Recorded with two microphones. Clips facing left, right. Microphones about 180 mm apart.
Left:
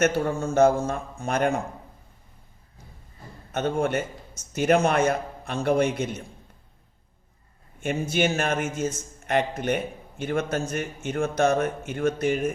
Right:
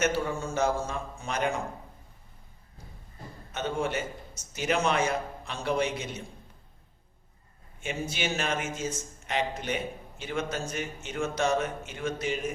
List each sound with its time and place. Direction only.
0.0 s a man's voice: 55° left (ahead or behind)
3.5 s a man's voice: 55° left (ahead or behind)
7.8 s a man's voice: 55° left (ahead or behind)